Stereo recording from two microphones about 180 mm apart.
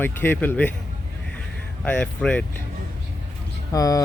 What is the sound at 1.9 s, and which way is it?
Speech, 5° left (ahead or behind).